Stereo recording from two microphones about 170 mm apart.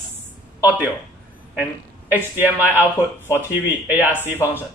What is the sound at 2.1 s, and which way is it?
Speech, 10° right (ahead or behind).